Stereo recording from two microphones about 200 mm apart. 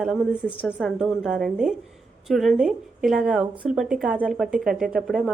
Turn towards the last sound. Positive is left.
turn(degrees=-5)  # may be behind; listen again after turning